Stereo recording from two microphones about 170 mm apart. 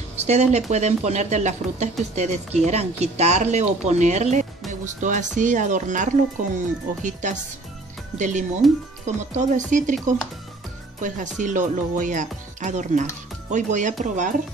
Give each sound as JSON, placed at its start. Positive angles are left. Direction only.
{"t": 0.3, "sound": "speech", "side_deg": -40}
{"t": 11.0, "sound": "speech", "side_deg": -50}